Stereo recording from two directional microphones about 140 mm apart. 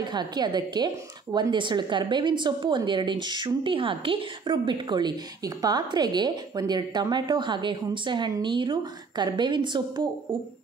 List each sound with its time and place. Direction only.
0.1 s a woman's voice: 30° right (ahead or behind)